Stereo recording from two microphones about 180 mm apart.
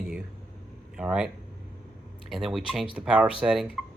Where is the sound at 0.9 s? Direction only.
5° right (ahead or behind).